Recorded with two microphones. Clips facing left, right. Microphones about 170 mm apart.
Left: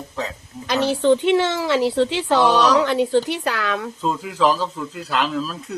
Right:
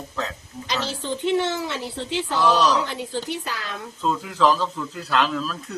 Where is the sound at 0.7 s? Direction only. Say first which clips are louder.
Left 11 dB; 60° left (ahead or behind); by 3.8 s 75° left (ahead or behind).